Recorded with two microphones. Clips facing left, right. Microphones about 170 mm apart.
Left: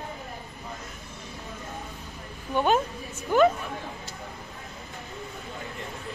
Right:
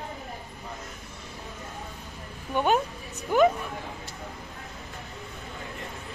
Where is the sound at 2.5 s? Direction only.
10° right (ahead or behind).